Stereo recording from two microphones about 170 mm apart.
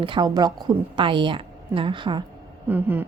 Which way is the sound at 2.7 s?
10° right (ahead or behind).